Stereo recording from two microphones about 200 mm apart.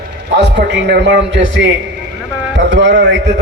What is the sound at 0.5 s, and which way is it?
Speech, 60° right (ahead or behind).